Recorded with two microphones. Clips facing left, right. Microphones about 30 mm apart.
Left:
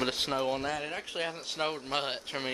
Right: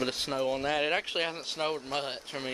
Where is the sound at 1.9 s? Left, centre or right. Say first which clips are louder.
Left 1 dB; centre.